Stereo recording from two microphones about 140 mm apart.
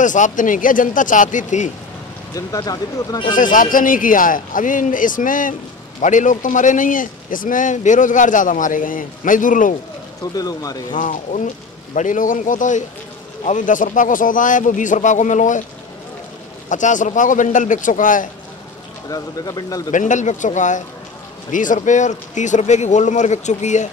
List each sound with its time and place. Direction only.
0.0 s a man's voice: 65° left (ahead or behind)
2.3 s speech: 25° left (ahead or behind)
3.3 s a man's voice: 75° left (ahead or behind)
10.3 s speech: 25° left (ahead or behind)
10.9 s a man's voice: 70° left (ahead or behind)
16.6 s speech: 65° left (ahead or behind)
19.0 s speech: 25° left (ahead or behind)
19.9 s speech: 60° left (ahead or behind)